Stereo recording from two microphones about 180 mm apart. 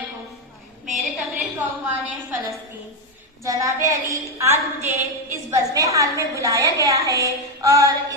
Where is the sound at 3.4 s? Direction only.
15° right (ahead or behind).